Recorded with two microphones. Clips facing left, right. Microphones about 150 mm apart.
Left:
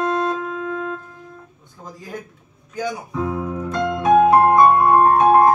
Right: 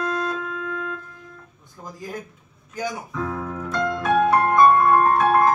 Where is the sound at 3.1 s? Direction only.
15° left (ahead or behind).